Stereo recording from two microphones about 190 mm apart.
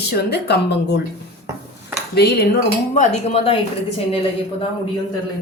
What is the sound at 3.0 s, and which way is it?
Speech, 35° left (ahead or behind).